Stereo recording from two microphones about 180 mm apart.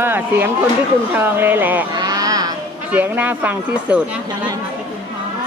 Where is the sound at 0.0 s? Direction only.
10° right (ahead or behind).